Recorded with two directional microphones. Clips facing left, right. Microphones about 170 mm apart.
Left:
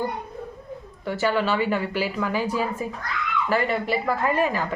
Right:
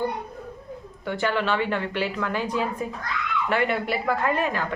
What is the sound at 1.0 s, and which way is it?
A woman's voice, 5° left (ahead or behind).